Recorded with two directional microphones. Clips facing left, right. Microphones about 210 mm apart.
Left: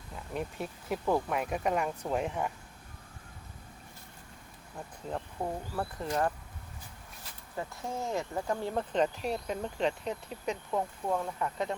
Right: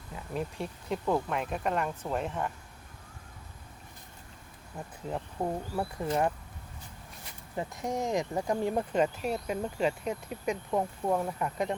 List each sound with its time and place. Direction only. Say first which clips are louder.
0.3 s speech: right 1 dB; 5° left (ahead or behind)
5.1 s speech: right 3 dB; 10° right (ahead or behind)
7.5 s speech: right 4 dB; 20° right (ahead or behind)